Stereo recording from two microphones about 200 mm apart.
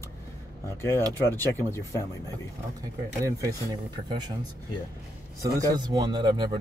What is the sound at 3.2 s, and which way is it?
Speech, 15° right (ahead or behind).